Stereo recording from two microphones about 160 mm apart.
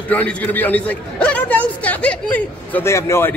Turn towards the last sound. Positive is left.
turn(degrees=15)  # may be behind; listen again after turning